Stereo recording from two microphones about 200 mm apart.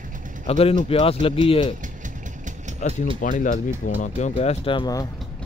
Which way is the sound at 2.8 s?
40° left (ahead or behind).